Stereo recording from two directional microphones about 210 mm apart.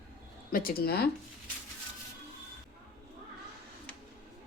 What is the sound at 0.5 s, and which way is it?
Speech, 45° left (ahead or behind).